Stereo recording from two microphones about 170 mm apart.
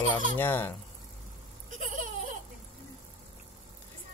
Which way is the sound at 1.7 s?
50° right (ahead or behind).